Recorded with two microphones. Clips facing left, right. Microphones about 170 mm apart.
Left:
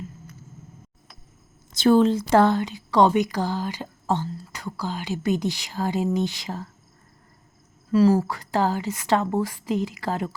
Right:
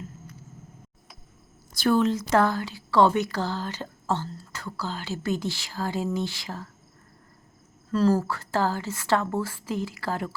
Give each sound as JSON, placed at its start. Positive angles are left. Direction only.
{"t": 1.7, "sound": "a woman's voice", "side_deg": 25}
{"t": 7.9, "sound": "a woman's voice", "side_deg": 10}